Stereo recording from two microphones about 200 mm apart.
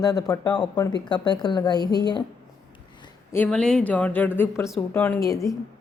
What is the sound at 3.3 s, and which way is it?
A woman's voice, 5° left (ahead or behind).